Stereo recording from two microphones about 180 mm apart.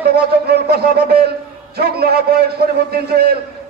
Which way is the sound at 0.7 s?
65° right (ahead or behind).